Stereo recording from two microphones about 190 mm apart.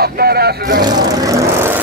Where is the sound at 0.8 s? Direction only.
20° right (ahead or behind).